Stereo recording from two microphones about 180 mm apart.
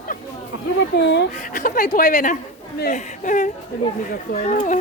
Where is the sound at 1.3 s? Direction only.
45° left (ahead or behind).